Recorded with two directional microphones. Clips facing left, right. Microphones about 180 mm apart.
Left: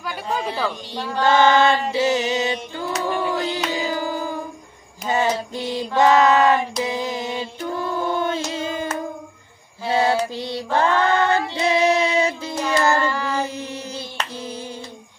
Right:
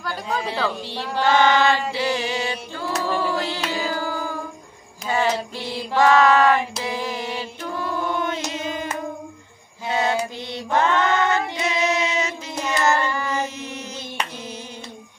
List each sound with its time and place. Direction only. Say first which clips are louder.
0.0 s speech: left 1 dB; 10° left (ahead or behind)
1.2 s a sound: left 2 dB; 25° left (ahead or behind)
5.0 s child singing: left 1 dB; 20° left (ahead or behind)
6.8 s mantra: left 3 dB; 20° left (ahead or behind)
8.5 s a sound: left 2 dB; 30° left (ahead or behind)
9.8 s female singing: left 3 dB; 30° left (ahead or behind)
10.8 s child singing: left 1 dB; 30° left (ahead or behind)